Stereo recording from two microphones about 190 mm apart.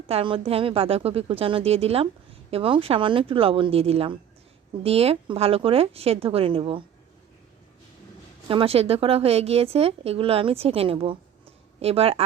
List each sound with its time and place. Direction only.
0.1 s speech: 30° right (ahead or behind)
8.4 s speech: 30° right (ahead or behind)